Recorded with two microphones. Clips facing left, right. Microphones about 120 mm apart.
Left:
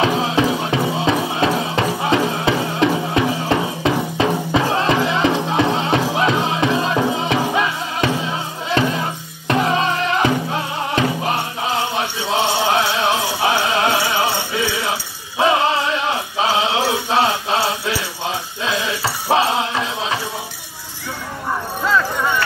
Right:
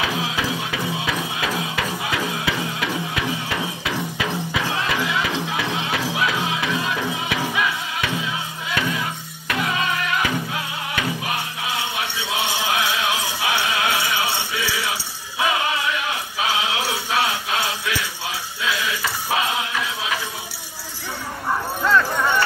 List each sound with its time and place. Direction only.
0.0 s music: 35° left (ahead or behind)